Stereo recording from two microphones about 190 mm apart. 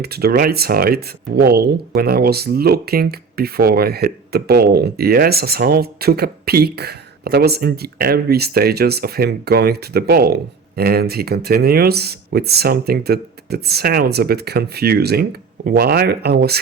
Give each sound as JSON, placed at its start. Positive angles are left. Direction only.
{"t": 0.0, "sound": "speech", "side_deg": -55}